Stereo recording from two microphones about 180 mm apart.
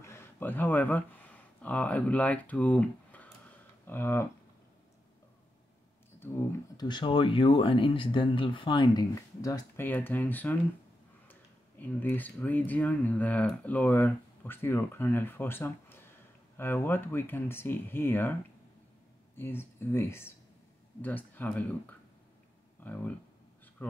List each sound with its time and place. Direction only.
0.0 s speech: 15° left (ahead or behind)
6.8 s speech: 25° left (ahead or behind); by 10.6 s 10° left (ahead or behind)
11.8 s speech: 10° left (ahead or behind)
19.3 s speech: 10° left (ahead or behind)
23.8 s a sound: 10° left (ahead or behind)